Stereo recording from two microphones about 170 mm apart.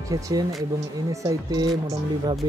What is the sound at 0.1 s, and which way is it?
Speech, 20° right (ahead or behind).